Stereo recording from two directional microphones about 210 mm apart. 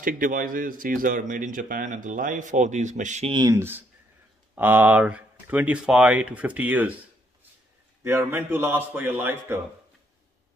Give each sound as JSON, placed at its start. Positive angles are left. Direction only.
{"t": 0.0, "sound": "speech", "side_deg": -40}
{"t": 8.0, "sound": "speech", "side_deg": -10}